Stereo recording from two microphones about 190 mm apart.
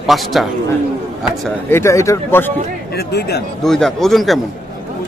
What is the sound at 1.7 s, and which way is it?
Speech, 15° left (ahead or behind).